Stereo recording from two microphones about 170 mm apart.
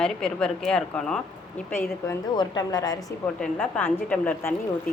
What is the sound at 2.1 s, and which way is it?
Speech, 25° left (ahead or behind).